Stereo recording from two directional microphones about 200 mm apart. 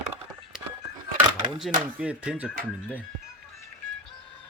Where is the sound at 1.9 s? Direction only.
5° right (ahead or behind).